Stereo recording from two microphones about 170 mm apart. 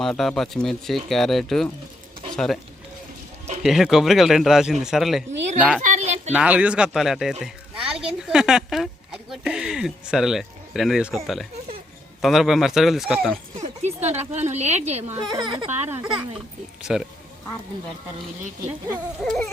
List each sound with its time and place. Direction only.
0.0 s speech: 5° left (ahead or behind)
3.6 s speech: centre (ahead or behind)
5.8 s a sound: 45° right (ahead or behind)
6.3 s speech: 10° right (ahead or behind)
13.6 s speech: 40° right (ahead or behind)
15.3 s speech: 25° right (ahead or behind)
15.9 s a child's voice: 15° right (ahead or behind)
19.2 s speech: 5° left (ahead or behind)